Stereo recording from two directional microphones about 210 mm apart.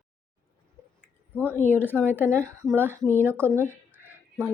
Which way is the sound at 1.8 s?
10° left (ahead or behind).